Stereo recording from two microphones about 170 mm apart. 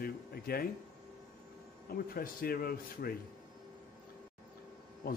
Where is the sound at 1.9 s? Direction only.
60° left (ahead or behind).